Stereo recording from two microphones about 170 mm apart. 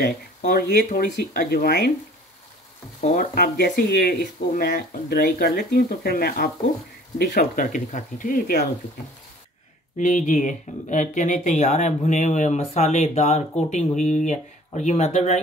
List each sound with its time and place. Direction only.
0.4 s speech: 55° left (ahead or behind)
3.0 s speech: 60° left (ahead or behind)
9.9 s speech: 50° left (ahead or behind)